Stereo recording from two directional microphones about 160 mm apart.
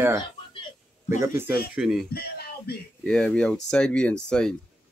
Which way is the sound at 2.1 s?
80° left.